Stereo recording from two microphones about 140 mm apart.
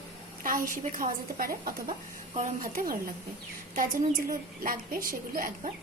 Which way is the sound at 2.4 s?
80° right.